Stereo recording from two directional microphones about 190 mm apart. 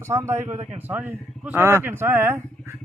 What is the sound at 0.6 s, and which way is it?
Speech, 35° right (ahead or behind).